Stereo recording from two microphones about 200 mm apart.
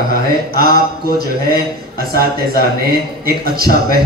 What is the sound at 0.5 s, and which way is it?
A man's voice, 50° right (ahead or behind).